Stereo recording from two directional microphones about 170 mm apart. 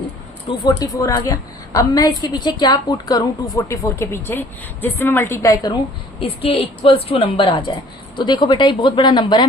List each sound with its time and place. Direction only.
0.6 s a woman's voice: 20° left (ahead or behind)
6.1 s a woman's voice: 30° left (ahead or behind)